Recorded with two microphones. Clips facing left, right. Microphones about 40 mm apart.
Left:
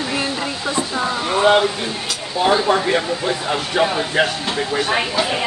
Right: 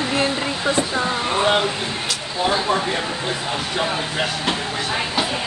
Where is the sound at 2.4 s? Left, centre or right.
Left.